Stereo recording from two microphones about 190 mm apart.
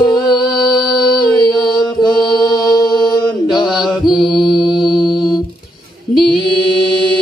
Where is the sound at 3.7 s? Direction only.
Centre (ahead or behind).